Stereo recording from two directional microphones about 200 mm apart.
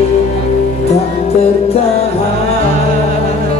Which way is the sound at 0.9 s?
30° left (ahead or behind).